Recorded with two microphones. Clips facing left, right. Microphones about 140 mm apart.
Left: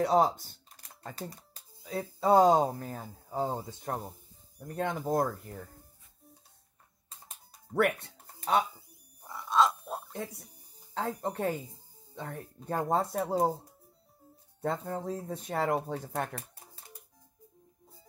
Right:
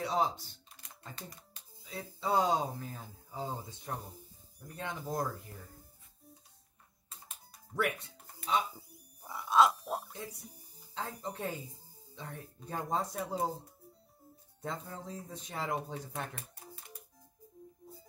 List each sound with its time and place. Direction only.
0.0 s speech: 50° left (ahead or behind)
1.8 s music: 50° left (ahead or behind)
2.1 s speech: 45° left (ahead or behind)
7.7 s speech: 60° left (ahead or behind)
8.7 s music: 5° right (ahead or behind)
11.0 s speech: 50° left (ahead or behind)
14.6 s speech: 55° left (ahead or behind)